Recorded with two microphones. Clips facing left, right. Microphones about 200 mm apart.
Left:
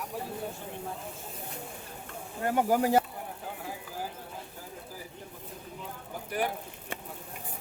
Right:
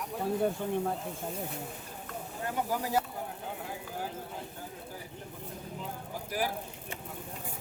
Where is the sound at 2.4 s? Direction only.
65° left (ahead or behind).